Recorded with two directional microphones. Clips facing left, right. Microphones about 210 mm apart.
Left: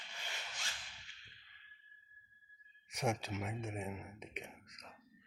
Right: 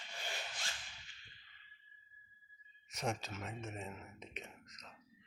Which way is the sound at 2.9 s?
15° left (ahead or behind).